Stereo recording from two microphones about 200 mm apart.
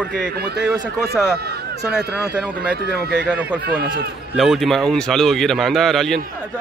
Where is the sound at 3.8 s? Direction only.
50° right (ahead or behind).